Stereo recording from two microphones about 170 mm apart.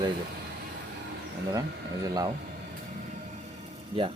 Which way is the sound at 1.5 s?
20° right (ahead or behind).